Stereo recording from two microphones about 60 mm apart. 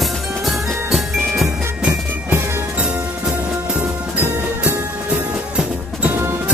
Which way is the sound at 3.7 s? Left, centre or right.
Right.